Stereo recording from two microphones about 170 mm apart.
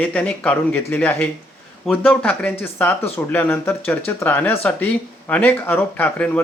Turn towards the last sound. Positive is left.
turn(degrees=10)  # may be behind; listen again after turning